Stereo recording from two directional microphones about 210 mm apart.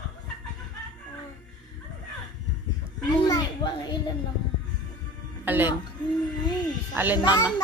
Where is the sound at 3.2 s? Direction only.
20° left (ahead or behind).